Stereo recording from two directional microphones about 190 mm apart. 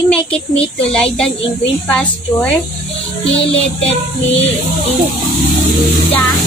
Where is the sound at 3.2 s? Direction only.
30° left (ahead or behind).